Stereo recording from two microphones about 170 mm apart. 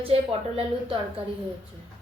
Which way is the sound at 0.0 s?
35° right (ahead or behind).